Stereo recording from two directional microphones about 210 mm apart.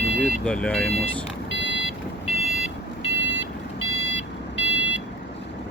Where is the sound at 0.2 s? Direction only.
5° left (ahead or behind).